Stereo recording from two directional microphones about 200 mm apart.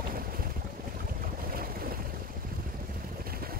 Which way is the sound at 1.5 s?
45° right (ahead or behind).